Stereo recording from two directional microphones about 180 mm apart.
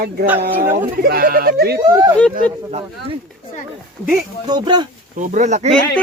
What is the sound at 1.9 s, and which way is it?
Speech, 20° right (ahead or behind).